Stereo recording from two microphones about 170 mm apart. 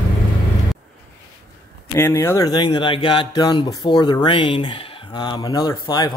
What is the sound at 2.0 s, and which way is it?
Speech, 15° left (ahead or behind).